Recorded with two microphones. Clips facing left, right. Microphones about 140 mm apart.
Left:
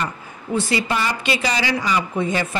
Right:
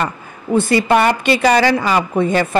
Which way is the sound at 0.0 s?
60° right (ahead or behind).